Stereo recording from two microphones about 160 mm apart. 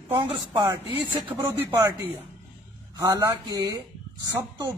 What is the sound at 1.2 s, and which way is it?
Speech, 15° right (ahead or behind).